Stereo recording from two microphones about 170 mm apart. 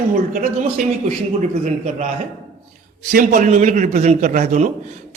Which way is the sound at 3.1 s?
50° right (ahead or behind).